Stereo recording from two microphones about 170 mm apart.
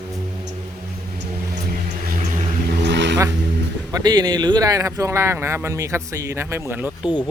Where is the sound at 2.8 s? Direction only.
90° right.